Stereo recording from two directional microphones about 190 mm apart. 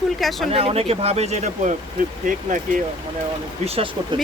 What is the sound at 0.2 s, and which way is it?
Speech, centre (ahead or behind).